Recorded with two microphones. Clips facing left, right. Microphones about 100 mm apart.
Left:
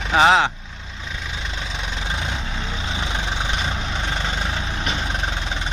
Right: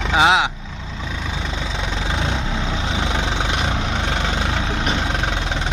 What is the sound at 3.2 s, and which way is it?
Vehicle, 75° right (ahead or behind).